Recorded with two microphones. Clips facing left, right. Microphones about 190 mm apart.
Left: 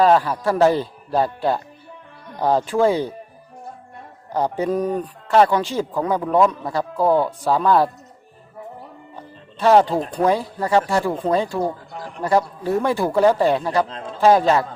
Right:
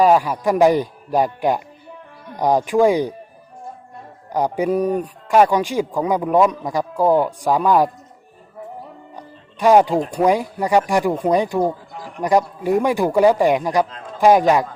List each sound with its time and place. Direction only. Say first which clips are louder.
0.0 s speech: right 1 dB; 10° right (ahead or behind)
4.3 s speech: right 2 dB; 10° right (ahead or behind)
9.1 s speech: even; 15° right (ahead or behind)